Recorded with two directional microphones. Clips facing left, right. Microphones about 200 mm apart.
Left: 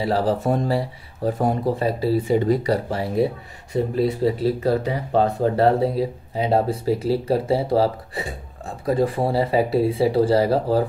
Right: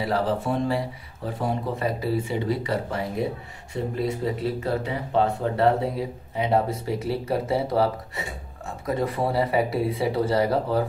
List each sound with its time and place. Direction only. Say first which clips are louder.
0.4 s speech: left 3 dB; 40° left (ahead or behind)
2.3 s speech: left 7 dB; 45° left (ahead or behind)